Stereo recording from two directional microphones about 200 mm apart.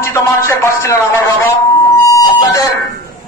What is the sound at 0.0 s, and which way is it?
Music, 15° left (ahead or behind).